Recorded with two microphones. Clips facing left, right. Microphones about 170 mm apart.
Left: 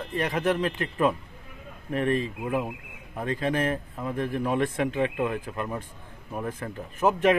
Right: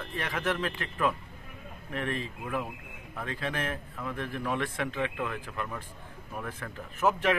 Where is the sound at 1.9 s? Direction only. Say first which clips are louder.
Left 8 dB; 40° left (ahead or behind).